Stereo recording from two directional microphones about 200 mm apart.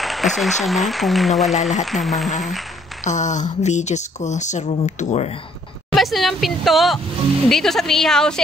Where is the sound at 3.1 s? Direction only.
35° left (ahead or behind).